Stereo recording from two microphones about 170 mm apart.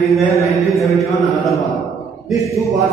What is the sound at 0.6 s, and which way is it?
Mantra, centre (ahead or behind).